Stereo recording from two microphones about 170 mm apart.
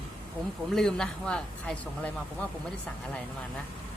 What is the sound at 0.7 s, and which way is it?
Speech, 5° left (ahead or behind).